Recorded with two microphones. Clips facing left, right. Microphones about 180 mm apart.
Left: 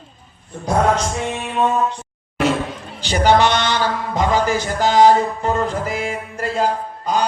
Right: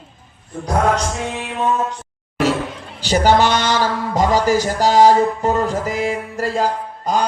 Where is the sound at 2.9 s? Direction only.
40° right (ahead or behind).